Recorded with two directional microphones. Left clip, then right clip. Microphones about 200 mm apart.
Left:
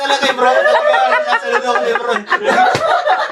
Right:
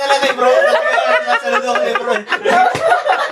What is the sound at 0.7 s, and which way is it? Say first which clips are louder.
Chuckle: left 2 dB; 5° right (ahead or behind).